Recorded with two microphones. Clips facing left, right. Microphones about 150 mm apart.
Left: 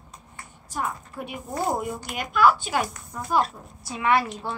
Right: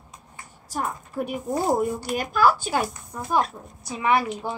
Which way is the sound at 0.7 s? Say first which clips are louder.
Right 1 dB; 40° right (ahead or behind).